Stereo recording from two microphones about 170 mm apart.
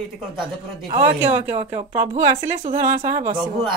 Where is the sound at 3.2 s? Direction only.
30° right (ahead or behind).